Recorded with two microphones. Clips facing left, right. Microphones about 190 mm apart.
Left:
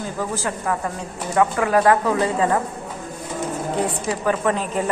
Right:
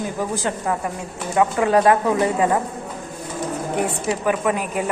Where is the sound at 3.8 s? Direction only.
25° right (ahead or behind).